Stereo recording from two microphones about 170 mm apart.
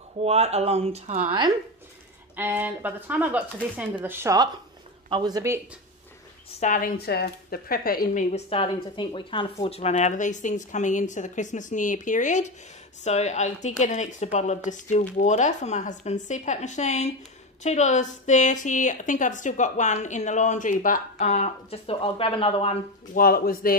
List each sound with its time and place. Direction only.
0.2 s speech: 35° right (ahead or behind)
2.3 s speech: 10° right (ahead or behind)
6.6 s speech: 50° left (ahead or behind)
7.0 s speech: 70° left (ahead or behind); by 22.8 s 35° left (ahead or behind)
23.1 s speech: 60° left (ahead or behind)